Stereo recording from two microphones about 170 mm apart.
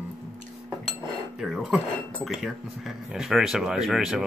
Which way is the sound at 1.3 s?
5° right (ahead or behind).